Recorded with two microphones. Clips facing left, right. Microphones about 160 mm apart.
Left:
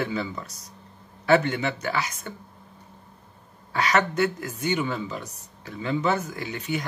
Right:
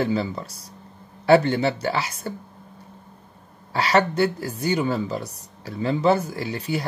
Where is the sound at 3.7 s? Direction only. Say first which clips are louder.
Right 3 dB; 30° right (ahead or behind).